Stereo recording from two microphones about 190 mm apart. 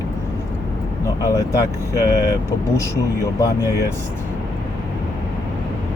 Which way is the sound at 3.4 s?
15° left (ahead or behind).